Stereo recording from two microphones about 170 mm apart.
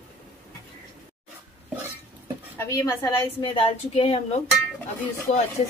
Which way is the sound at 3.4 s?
30° left (ahead or behind).